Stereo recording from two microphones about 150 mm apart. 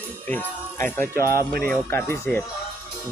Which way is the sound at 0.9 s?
15° left (ahead or behind).